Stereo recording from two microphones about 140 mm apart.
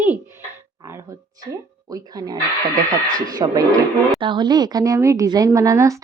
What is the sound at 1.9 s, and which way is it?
Speech, 25° right (ahead or behind).